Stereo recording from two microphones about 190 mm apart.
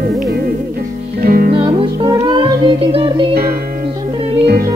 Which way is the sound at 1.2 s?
50° right (ahead or behind).